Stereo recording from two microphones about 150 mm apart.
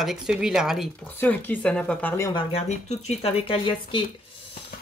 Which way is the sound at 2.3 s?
45° left (ahead or behind).